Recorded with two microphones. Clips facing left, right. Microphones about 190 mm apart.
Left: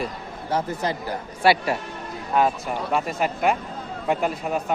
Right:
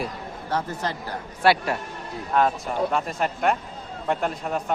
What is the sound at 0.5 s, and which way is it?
A man's voice, 10° left (ahead or behind).